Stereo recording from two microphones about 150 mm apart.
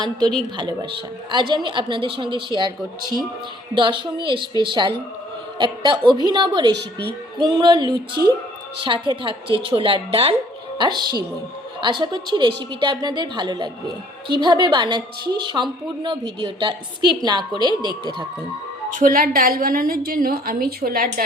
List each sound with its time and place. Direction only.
0.5 s a woman's voice: 30° right (ahead or behind)
3.8 s a woman's voice: 35° right (ahead or behind)
18.9 s a woman's voice: 60° right (ahead or behind)